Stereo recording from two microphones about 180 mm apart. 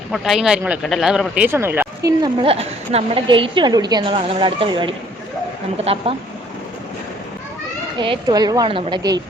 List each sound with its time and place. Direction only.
0.1 s speech: centre (ahead or behind); by 2.3 s 20° right (ahead or behind)
2.4 s a woman's voice: 35° right (ahead or behind)
7.9 s a woman's voice: 25° right (ahead or behind)